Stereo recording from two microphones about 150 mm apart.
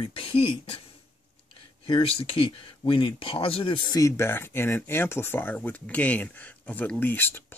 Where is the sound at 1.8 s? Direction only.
40° left (ahead or behind).